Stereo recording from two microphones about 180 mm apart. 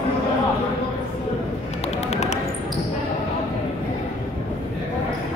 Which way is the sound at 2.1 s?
40° left (ahead or behind).